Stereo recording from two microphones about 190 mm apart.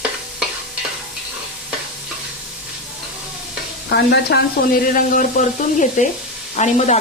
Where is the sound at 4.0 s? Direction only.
65° left (ahead or behind).